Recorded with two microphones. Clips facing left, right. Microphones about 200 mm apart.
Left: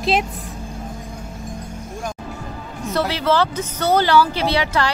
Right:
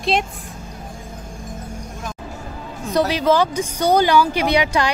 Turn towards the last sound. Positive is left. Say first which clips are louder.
# right 2 dB
turn(degrees=-15)  # may be behind; listen again after turning